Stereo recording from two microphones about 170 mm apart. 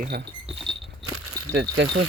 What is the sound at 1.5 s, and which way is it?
Speech, 75° right (ahead or behind).